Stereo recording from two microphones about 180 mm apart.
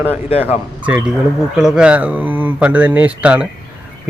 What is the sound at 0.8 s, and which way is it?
Speech, 10° right (ahead or behind).